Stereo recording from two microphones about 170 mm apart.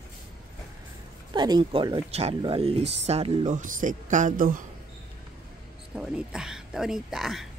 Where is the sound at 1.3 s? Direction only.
25° right (ahead or behind); by 4.6 s 50° right (ahead or behind).